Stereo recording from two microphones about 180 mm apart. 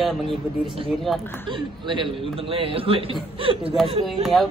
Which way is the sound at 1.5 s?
25° right (ahead or behind).